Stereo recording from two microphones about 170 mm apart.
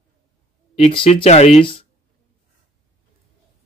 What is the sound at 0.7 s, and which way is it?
Speech, 35° left (ahead or behind).